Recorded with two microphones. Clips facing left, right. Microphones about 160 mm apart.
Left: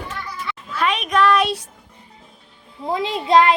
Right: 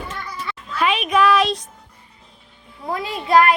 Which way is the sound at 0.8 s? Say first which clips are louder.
Right 1 dB; 5° right (ahead or behind).